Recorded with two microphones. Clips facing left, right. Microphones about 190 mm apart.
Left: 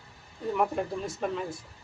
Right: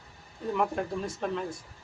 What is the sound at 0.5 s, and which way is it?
Speech, 5° left (ahead or behind).